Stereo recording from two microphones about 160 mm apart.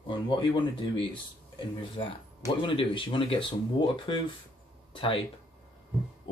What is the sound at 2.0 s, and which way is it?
Speech, 30° left (ahead or behind).